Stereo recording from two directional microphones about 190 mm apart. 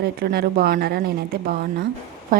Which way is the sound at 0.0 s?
55° right (ahead or behind).